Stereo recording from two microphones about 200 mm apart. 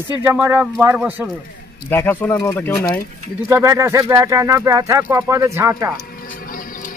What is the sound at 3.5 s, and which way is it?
Speech, 15° right (ahead or behind).